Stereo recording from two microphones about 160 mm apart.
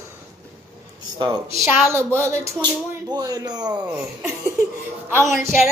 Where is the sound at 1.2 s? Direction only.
20° right (ahead or behind).